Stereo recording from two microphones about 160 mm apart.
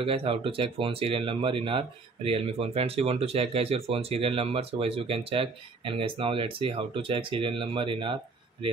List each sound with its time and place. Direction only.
0.0 s speech: 35° right (ahead or behind)